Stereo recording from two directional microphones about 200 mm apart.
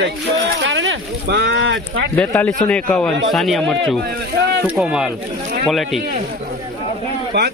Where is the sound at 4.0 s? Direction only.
55° right (ahead or behind).